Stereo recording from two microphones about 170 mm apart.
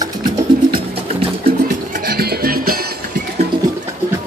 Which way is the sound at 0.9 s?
35° right (ahead or behind).